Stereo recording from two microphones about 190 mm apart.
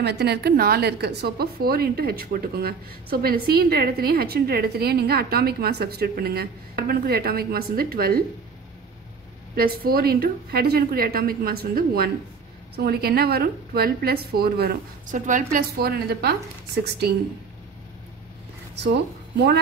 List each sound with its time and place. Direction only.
0.0 s a woman's voice: 60° right (ahead or behind)
9.6 s a woman's voice: 50° right (ahead or behind)
19.3 s speech: 60° right (ahead or behind)